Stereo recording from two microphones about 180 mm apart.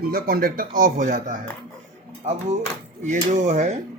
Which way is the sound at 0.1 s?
55° right (ahead or behind).